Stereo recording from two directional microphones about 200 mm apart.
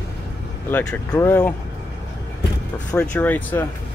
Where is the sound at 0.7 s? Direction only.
10° left (ahead or behind).